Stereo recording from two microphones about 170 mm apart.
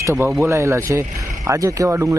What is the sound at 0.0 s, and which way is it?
Speech, 15° right (ahead or behind).